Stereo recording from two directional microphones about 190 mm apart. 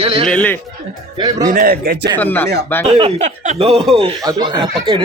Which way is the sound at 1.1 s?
20° right (ahead or behind).